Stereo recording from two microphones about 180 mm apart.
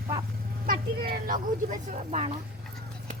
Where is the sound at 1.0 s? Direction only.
55° right (ahead or behind); by 2.3 s 35° right (ahead or behind).